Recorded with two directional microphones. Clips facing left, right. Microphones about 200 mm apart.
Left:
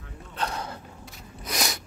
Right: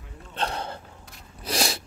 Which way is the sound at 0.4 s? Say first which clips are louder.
Right 2 dB; 30° right (ahead or behind).